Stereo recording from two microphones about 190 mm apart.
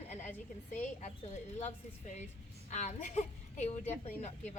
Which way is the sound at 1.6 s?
35° left (ahead or behind).